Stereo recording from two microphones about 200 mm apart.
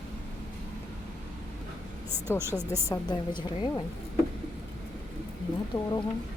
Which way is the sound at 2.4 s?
10° right (ahead or behind).